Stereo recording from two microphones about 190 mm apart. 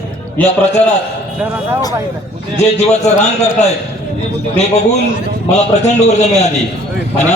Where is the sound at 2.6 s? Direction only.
35° left (ahead or behind).